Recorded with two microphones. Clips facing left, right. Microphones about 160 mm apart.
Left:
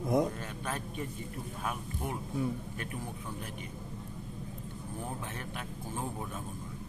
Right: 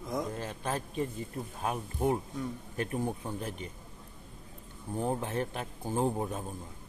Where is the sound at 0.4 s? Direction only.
30° right (ahead or behind).